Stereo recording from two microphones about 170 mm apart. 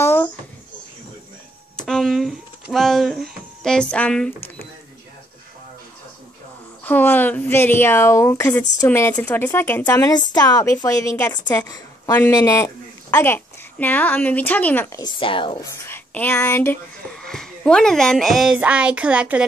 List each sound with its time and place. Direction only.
0.0 s babbling: 10° left (ahead or behind)
1.8 s a sound: 5° left (ahead or behind)
2.7 s speech: centre (ahead or behind)
6.8 s a woman's voice: 10° left (ahead or behind)
15.0 s a woman's voice: 25° left (ahead or behind)
15.6 s speech: 15° left (ahead or behind); by 19.4 s 5° right (ahead or behind)